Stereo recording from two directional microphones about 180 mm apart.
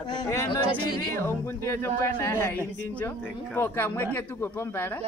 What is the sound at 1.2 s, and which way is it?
Speech, 15° left (ahead or behind).